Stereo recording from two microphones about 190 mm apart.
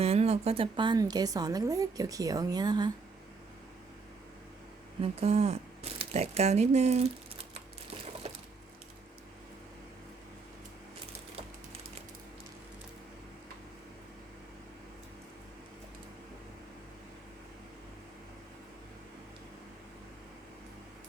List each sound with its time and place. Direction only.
0.0 s speech: 35° right (ahead or behind)
5.2 s speech: 35° right (ahead or behind)